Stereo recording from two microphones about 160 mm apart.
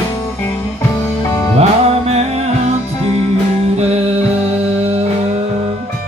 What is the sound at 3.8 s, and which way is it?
Music, 40° right (ahead or behind).